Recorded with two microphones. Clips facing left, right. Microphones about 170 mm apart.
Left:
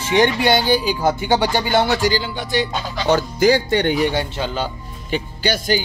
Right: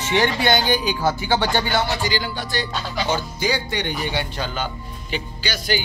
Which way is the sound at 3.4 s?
55° left (ahead or behind).